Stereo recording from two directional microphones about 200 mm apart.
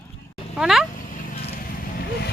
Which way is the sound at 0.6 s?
Centre (ahead or behind).